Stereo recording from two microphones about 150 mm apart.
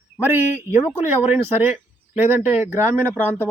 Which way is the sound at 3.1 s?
10° left (ahead or behind).